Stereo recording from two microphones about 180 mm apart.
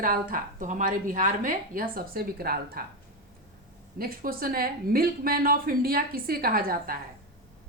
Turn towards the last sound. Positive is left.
turn(degrees=-55)  # may be behind; listen again after turning